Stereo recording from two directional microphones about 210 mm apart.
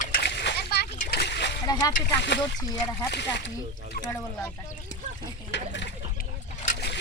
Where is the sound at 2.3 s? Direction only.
55° left (ahead or behind).